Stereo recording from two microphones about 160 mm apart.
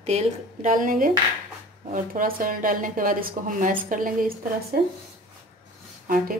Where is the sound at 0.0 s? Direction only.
45° right (ahead or behind); by 4.3 s 60° right (ahead or behind).